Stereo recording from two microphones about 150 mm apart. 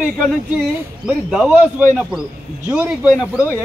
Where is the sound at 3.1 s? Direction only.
Centre (ahead or behind).